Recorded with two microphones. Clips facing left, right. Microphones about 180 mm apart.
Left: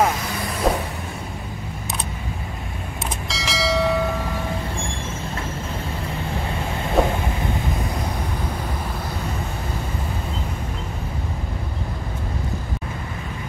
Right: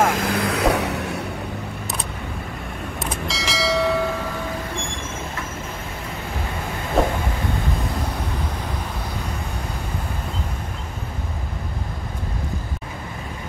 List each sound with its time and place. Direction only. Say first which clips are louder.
0.1 s vehicle: right 5 dB; 65° right (ahead or behind)
3.3 s train: even; centre (ahead or behind)
7.0 s vehicle: even; centre (ahead or behind)